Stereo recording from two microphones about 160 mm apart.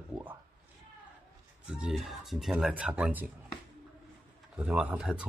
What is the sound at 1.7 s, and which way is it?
Speech, 5° right (ahead or behind).